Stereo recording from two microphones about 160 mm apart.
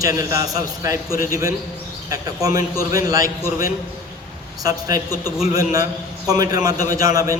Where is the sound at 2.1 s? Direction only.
20° right (ahead or behind).